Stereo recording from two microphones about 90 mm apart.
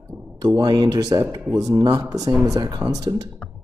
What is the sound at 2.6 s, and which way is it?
Speech, 50° right (ahead or behind).